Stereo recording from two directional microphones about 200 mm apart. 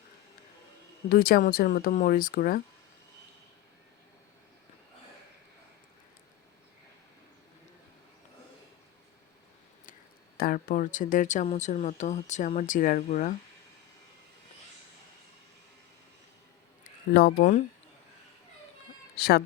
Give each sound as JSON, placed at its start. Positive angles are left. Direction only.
{"t": 1.1, "sound": "speech", "side_deg": 45}
{"t": 10.3, "sound": "speech", "side_deg": 45}
{"t": 16.8, "sound": "speech", "side_deg": 50}
{"t": 19.1, "sound": "speech", "side_deg": 50}